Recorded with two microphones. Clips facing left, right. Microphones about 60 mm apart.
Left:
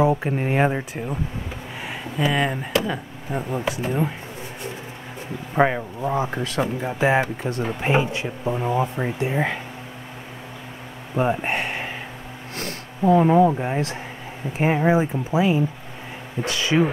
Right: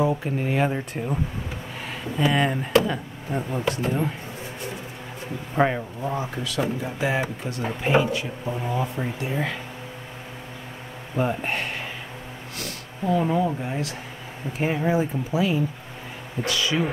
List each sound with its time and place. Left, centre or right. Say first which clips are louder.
0.0 s speech: left 3 dB; left
0.9 s speech: right 1 dB; centre
5.5 s speech: left 3 dB; centre
6.3 s speech: left 2 dB; left
7.9 s speech: right 1 dB; left
11.1 s speech: left 3 dB; left
12.5 s speech: left 5 dB; left